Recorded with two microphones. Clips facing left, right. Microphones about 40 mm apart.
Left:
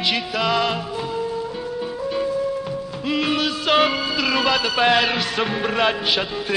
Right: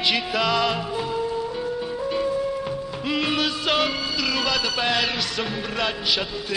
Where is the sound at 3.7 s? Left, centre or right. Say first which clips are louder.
Left 5 dB; left.